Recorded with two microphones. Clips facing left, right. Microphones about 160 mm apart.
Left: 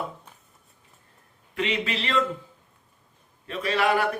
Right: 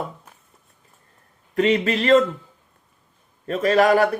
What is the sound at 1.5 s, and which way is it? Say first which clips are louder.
Speech: right 9 dB; 45° right (ahead or behind).